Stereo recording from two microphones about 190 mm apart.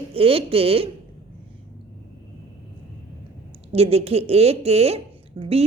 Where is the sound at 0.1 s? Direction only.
30° right (ahead or behind).